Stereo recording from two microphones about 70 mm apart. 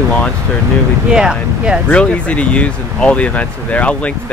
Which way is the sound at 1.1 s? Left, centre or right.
Centre.